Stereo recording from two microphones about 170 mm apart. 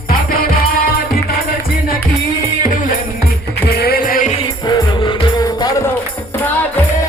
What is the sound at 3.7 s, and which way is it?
Music, 70° left (ahead or behind).